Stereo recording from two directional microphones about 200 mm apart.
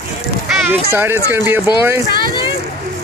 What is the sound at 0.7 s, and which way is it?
Speech, 10° right (ahead or behind).